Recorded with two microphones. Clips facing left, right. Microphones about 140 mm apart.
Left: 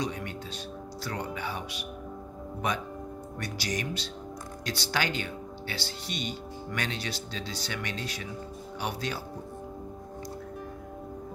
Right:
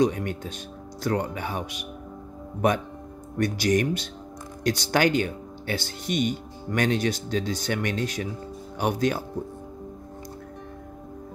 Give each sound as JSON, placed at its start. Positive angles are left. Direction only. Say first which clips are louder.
{"t": 0.0, "sound": "speech", "louder": "right 10 dB", "side_deg": -50}
{"t": 3.3, "sound": "speech", "louder": "right 12 dB", "side_deg": -50}